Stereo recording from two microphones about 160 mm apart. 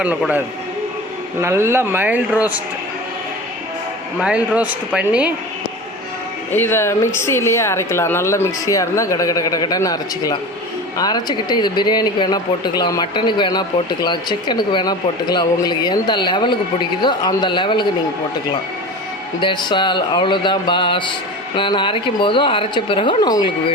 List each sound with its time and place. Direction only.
0.0 s speech: 10° right (ahead or behind)
4.2 s speech: 5° right (ahead or behind)
6.5 s speech: 15° left (ahead or behind); by 17.8 s 30° left (ahead or behind)
19.4 s a woman's voice: 30° left (ahead or behind)